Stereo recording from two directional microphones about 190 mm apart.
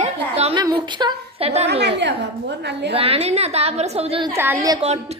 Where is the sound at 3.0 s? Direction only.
30° right (ahead or behind).